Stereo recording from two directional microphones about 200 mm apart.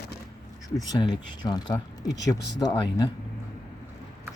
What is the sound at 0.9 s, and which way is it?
Speech, 20° left (ahead or behind).